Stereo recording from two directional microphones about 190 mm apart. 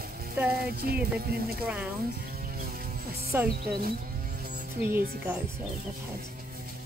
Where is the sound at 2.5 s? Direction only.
50° right (ahead or behind).